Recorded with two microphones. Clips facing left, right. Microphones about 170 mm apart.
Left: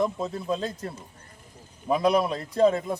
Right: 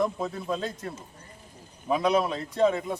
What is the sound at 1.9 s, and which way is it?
Speech, 40° left (ahead or behind).